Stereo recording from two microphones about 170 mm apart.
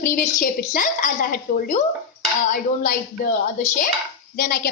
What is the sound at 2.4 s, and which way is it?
Speech, 50° left (ahead or behind).